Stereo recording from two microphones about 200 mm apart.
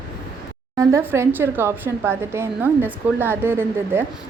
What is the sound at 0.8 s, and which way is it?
Speech, 15° right (ahead or behind).